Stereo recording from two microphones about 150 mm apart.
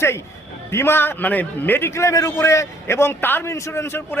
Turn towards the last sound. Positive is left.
turn(degrees=15)  # may be behind; listen again after turning